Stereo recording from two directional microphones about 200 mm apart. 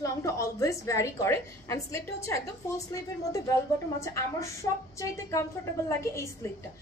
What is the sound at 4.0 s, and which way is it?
A woman's voice, 15° left (ahead or behind).